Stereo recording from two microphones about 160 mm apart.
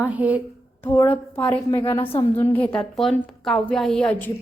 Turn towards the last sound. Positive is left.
turn(degrees=10)  # may be behind; listen again after turning